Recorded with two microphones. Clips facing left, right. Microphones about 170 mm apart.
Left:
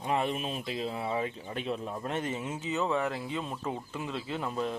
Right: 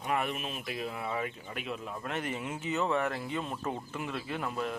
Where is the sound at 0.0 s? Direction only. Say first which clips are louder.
Left 2 dB; 25° left (ahead or behind).